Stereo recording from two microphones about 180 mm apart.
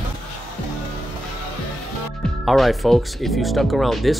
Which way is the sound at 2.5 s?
Centre (ahead or behind).